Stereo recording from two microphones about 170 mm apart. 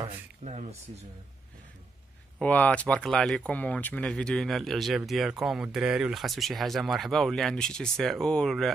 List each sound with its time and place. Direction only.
0.4 s speech: 40° right (ahead or behind)
2.3 s speech: 10° left (ahead or behind)